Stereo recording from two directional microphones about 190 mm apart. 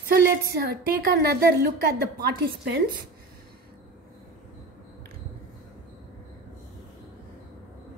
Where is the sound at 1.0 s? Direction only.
55° right (ahead or behind).